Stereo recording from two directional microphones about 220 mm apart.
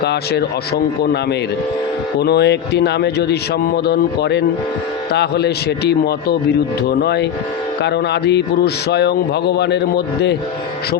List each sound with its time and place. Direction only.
0.0 s speech: 50° left (ahead or behind)
2.1 s speech: 50° left (ahead or behind)